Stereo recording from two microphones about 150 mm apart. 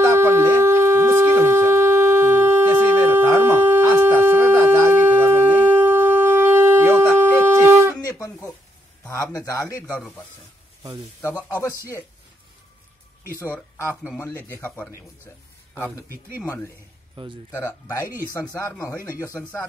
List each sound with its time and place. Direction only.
0.2 s shofar: 15° right (ahead or behind)
9.1 s speech: 20° left (ahead or behind)
11.5 s speech: 20° left (ahead or behind)
14.2 s speech: 15° left (ahead or behind)
16.3 s speech: 15° left (ahead or behind)
17.1 s speech: 30° right (ahead or behind)
17.5 s speech: 20° left (ahead or behind)